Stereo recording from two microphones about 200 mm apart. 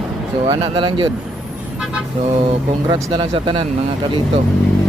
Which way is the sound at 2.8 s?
25° right (ahead or behind).